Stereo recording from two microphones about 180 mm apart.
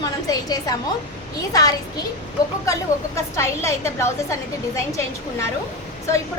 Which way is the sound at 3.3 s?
15° left (ahead or behind).